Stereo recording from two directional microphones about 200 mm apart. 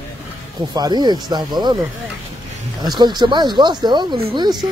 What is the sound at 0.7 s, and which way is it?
Speech, 20° right (ahead or behind).